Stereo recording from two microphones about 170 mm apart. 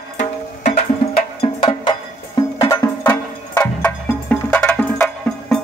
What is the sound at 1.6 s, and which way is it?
Music, 30° left (ahead or behind).